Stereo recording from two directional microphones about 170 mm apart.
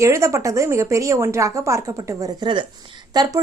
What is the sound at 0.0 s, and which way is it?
Speech, 15° right (ahead or behind).